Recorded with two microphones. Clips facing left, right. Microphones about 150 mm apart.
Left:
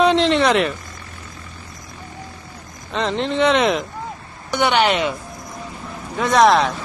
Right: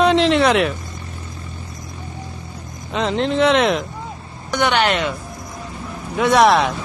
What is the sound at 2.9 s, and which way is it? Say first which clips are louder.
Speech: right 2 dB; centre (ahead or behind).